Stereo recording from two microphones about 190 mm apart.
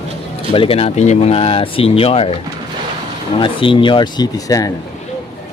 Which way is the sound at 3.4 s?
25° left (ahead or behind).